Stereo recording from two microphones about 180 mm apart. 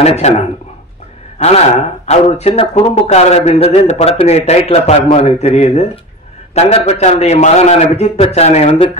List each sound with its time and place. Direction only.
0.0 s a man's voice: 35° left (ahead or behind)
2.0 s a man's voice: 35° left (ahead or behind)